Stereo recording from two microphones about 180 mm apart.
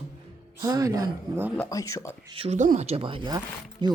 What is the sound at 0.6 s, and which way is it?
Speech, 20° right (ahead or behind).